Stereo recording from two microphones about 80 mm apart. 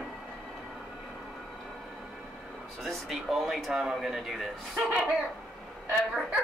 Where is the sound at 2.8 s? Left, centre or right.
Centre.